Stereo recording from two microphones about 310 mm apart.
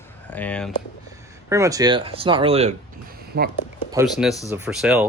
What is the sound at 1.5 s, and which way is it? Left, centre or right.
Speech, centre.